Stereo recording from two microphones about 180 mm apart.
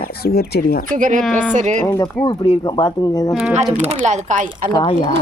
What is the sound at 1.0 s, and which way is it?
Speech, 45° right (ahead or behind).